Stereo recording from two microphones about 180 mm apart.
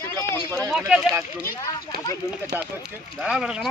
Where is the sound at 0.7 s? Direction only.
Centre (ahead or behind).